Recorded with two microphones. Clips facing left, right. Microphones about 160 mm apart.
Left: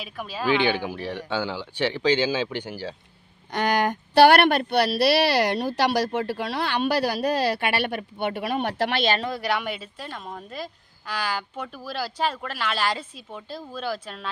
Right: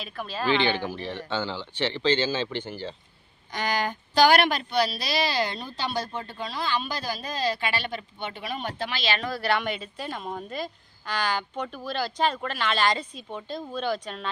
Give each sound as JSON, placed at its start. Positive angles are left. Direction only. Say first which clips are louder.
{"t": 0.0, "sound": "speech", "louder": "left 1 dB", "side_deg": 10}
{"t": 3.5, "sound": "speech", "louder": "left 5 dB", "side_deg": 60}
{"t": 9.2, "sound": "a woman's voice", "louder": "even", "side_deg": 15}